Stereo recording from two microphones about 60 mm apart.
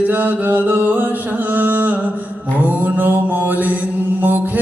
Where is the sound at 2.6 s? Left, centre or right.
Right.